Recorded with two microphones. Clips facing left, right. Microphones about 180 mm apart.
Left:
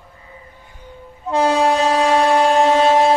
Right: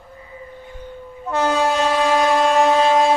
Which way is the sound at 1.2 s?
25° left (ahead or behind).